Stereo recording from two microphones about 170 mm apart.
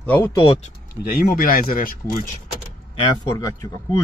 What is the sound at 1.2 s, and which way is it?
Speech, 60° left (ahead or behind).